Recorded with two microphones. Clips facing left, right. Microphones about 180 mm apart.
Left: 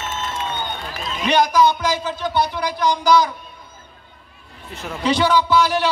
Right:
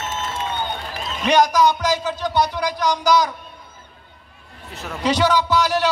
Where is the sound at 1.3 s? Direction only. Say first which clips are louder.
Even; 40° right (ahead or behind).